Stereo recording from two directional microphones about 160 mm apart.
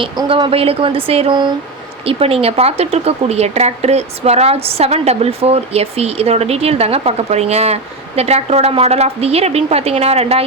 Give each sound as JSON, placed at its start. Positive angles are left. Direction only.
{"t": 0.0, "sound": "speech", "side_deg": -30}